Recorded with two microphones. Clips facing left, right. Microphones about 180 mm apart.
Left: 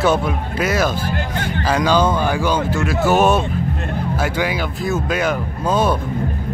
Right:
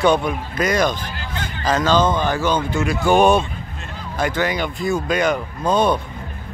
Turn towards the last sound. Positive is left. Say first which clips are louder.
# even
turn(degrees=5)  # may be behind; listen again after turning